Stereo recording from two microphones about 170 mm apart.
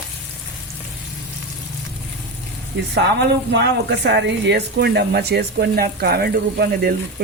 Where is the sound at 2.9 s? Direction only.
90° right.